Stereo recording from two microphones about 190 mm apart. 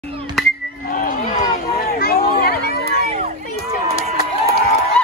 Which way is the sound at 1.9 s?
50° left (ahead or behind).